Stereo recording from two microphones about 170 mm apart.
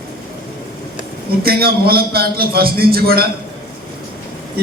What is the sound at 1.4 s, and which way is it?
A man's voice, 60° right (ahead or behind).